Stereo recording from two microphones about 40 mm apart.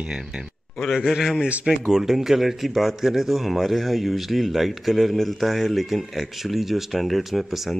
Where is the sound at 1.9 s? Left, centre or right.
Centre.